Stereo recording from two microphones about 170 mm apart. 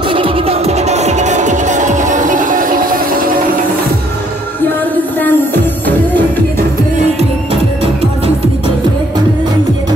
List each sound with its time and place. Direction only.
0.1 s music: 35° right (ahead or behind); by 3.0 s 55° right (ahead or behind)
5.2 s music: 10° left (ahead or behind)